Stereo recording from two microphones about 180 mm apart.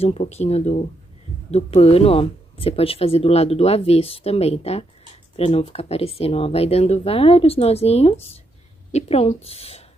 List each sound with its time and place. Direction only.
0.0 s speech: 35° left (ahead or behind)